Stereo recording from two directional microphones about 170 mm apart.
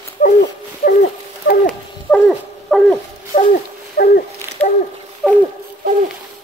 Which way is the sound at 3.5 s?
65° left (ahead or behind).